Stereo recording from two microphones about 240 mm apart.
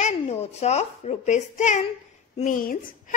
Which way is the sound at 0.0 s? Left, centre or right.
Left.